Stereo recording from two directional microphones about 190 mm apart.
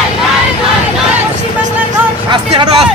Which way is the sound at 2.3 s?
25° right (ahead or behind).